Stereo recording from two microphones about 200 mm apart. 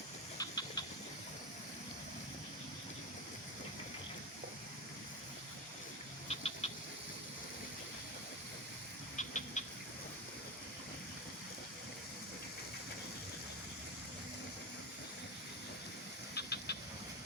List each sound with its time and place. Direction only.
0.3 s chicken: 20° left (ahead or behind)
6.2 s a sound: 30° left (ahead or behind)
9.1 s rodents: 35° left (ahead or behind)
16.3 s steam: 55° left (ahead or behind)